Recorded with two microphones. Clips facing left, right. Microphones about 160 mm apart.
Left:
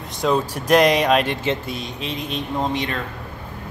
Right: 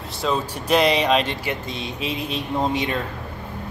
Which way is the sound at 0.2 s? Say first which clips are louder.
Left 4 dB; 10° left (ahead or behind).